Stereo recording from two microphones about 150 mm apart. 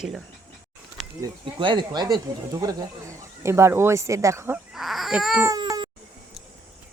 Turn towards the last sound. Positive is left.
turn(degrees=-25)  # may be behind; listen again after turning